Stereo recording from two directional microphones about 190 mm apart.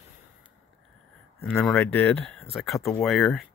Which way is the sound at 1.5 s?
Centre (ahead or behind).